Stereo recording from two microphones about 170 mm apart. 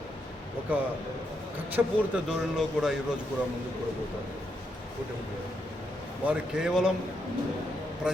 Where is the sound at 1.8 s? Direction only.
10° right (ahead or behind).